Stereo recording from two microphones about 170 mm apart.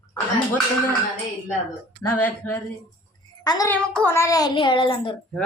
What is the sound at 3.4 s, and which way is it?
Speech, 25° left (ahead or behind).